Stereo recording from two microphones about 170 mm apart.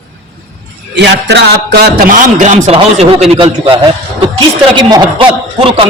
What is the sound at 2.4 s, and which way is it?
A man's voice, 45° right (ahead or behind).